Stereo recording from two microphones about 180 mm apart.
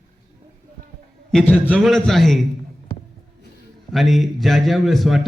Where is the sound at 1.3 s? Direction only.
5° left (ahead or behind).